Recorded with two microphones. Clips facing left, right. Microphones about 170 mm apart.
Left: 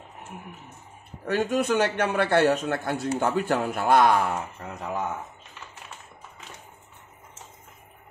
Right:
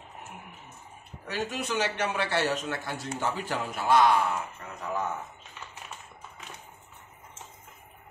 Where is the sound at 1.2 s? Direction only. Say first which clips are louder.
Left 9 dB; 55° left (ahead or behind).